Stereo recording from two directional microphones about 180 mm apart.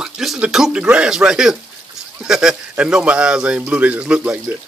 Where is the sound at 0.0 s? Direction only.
Centre (ahead or behind).